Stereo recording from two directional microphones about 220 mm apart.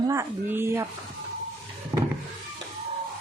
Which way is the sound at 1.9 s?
20° right (ahead or behind).